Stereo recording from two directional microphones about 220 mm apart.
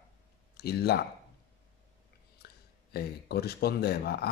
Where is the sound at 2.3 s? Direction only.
45° left (ahead or behind).